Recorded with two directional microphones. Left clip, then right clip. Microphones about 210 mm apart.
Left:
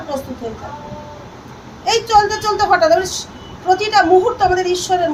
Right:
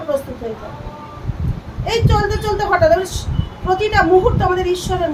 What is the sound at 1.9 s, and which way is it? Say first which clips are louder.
A woman's voice: left 5 dB; 15° right (ahead or behind).